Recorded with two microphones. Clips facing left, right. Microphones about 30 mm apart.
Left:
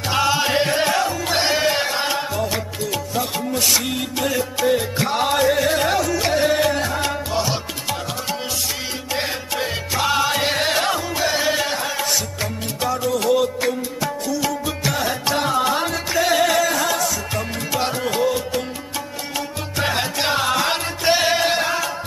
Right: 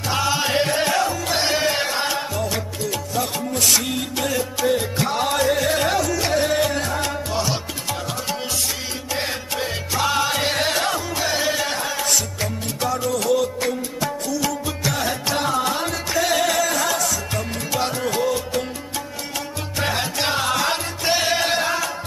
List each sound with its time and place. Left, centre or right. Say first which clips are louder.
0.1 s music: left 2 dB; centre
3.7 s music: even; centre
9.1 s music: left 1 dB; centre
13.2 s music: left 3 dB; centre
19.8 s music: left 1 dB; centre